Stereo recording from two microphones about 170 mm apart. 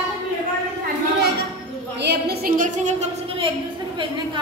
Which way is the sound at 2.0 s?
75° right (ahead or behind).